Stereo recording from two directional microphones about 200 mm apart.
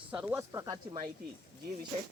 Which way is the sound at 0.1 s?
5° right (ahead or behind).